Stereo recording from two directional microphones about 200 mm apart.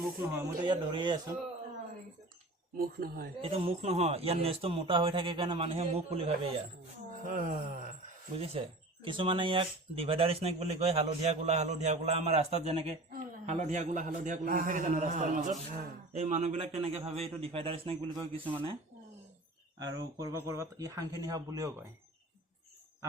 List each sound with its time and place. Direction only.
0.0 s speech: 10° right (ahead or behind)
0.6 s speech: 25° right (ahead or behind)
2.7 s speech: 50° right (ahead or behind)
3.4 s speech: 30° right (ahead or behind)
7.2 s a man's voice: 40° right (ahead or behind)
8.4 s a man's voice: 25° right (ahead or behind)
19.8 s speech: 20° right (ahead or behind)